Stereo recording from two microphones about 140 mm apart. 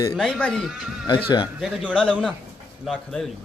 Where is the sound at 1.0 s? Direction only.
35° left (ahead or behind).